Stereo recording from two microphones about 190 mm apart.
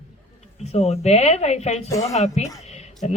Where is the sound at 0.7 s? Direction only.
35° left (ahead or behind).